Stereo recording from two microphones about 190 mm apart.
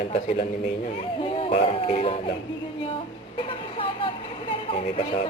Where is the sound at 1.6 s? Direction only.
30° left (ahead or behind).